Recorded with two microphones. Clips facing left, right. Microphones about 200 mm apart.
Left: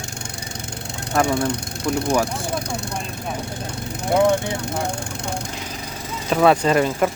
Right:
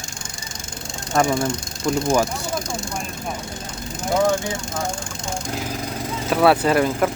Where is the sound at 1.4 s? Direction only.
65° left (ahead or behind).